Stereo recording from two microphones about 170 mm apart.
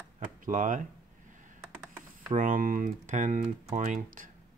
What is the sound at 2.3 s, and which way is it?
Speech, 55° right (ahead or behind).